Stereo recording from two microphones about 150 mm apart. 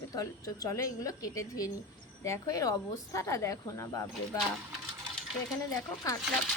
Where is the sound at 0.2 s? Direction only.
25° left (ahead or behind).